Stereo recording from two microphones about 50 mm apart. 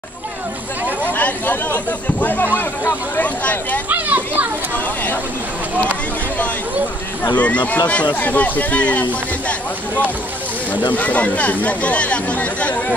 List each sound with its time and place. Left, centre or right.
1.0 s speech: left
3.9 s children playing: right
4.7 s a sound: left
7.3 s speech: left
10.7 s speech: left